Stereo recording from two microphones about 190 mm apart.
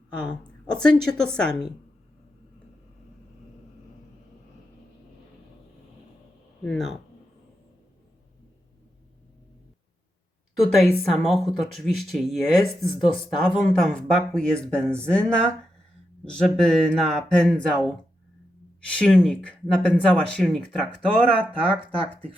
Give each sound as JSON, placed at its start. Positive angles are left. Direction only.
{"t": 0.3, "sound": "speech", "side_deg": 5}
{"t": 6.7, "sound": "speech", "side_deg": 0}
{"t": 10.6, "sound": "speech", "side_deg": 0}
{"t": 21.2, "sound": "speech", "side_deg": -30}